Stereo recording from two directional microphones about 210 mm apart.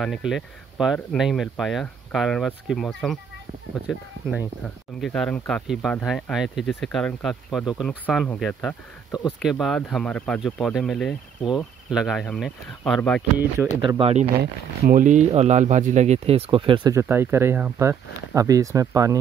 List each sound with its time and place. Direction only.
0.0 s speech: centre (ahead or behind)
5.0 s speech: 5° left (ahead or behind)
13.8 s speech: 25° right (ahead or behind)
14.4 s speech: 40° right (ahead or behind); by 19.1 s 15° right (ahead or behind)